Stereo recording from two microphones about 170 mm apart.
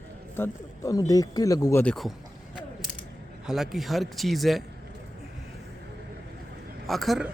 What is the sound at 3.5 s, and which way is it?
Speech, centre (ahead or behind).